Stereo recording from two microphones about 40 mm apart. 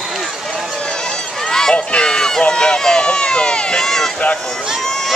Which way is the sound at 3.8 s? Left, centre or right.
Centre.